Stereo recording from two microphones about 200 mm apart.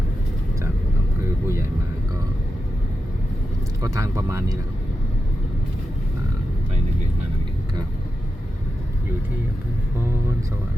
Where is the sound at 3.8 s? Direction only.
15° right (ahead or behind).